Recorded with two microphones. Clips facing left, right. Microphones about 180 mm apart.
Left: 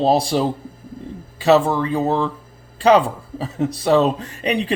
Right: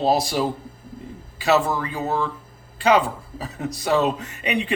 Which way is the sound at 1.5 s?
30° left (ahead or behind).